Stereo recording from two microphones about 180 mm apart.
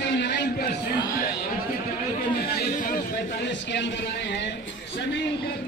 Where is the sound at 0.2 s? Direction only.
70° left (ahead or behind).